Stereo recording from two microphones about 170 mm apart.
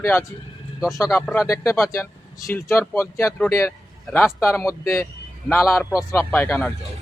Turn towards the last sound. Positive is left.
turn(degrees=10)  # may be behind; listen again after turning